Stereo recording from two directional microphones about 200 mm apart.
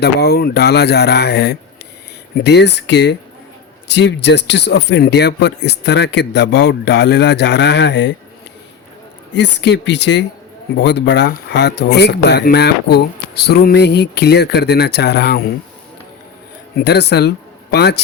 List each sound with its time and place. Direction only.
0.0 s speech: 55° left (ahead or behind)
9.3 s speech: 60° left (ahead or behind)
16.7 s speech: 55° left (ahead or behind)